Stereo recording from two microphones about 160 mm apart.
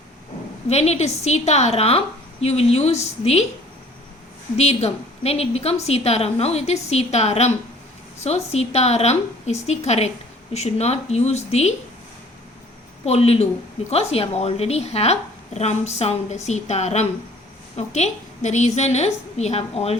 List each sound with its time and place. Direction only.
0.7 s a woman's voice: 45° left (ahead or behind)
4.5 s a woman's voice: 40° left (ahead or behind)
13.1 s a woman's voice: 40° left (ahead or behind)